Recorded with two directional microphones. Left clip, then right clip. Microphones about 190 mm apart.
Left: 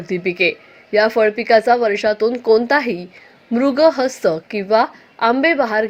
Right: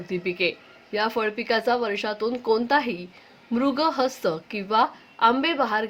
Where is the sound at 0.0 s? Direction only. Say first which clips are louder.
Left 8 dB; 20° left (ahead or behind).